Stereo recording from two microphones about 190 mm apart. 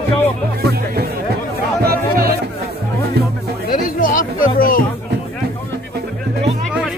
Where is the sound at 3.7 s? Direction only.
45° left (ahead or behind).